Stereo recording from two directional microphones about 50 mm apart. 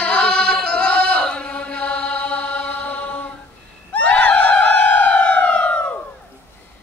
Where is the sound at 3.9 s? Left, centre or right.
Left.